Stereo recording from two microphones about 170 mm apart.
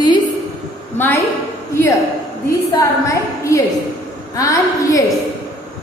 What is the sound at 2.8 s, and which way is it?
A woman's voice, 20° left (ahead or behind).